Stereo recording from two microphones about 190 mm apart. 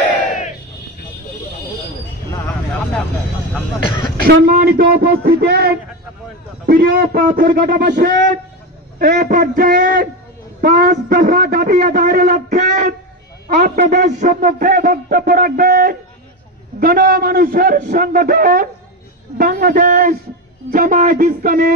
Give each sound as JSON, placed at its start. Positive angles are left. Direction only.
{"t": 4.2, "sound": "a man's voice", "side_deg": -50}